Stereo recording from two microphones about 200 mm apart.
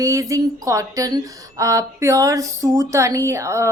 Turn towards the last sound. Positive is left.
turn(degrees=-15)  # may be behind; listen again after turning